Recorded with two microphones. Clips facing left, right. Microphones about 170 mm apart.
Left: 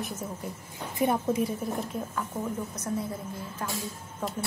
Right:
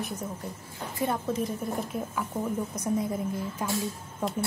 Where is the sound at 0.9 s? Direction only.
15° left (ahead or behind).